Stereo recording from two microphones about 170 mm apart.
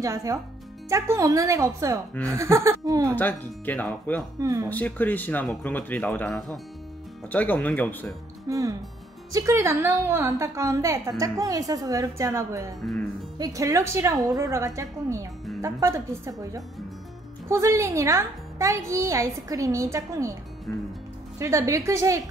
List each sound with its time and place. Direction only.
0.0 s a woman's voice: 20° right (ahead or behind)
3.2 s speech: 10° left (ahead or behind)
4.4 s speech: 20° right (ahead or behind)
4.6 s speech: 10° left (ahead or behind)
8.5 s a woman's voice: 20° right (ahead or behind)
20.7 s speech: 5° left (ahead or behind)
21.4 s speech: 15° right (ahead or behind)